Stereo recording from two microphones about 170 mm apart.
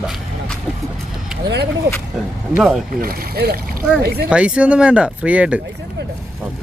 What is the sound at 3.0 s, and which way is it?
Speech, 60° right (ahead or behind).